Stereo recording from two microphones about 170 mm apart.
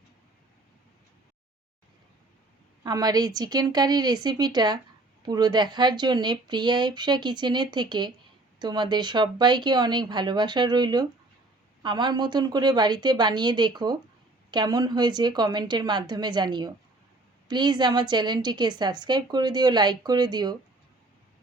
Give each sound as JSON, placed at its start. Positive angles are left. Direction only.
{"t": 2.8, "sound": "speech", "side_deg": -20}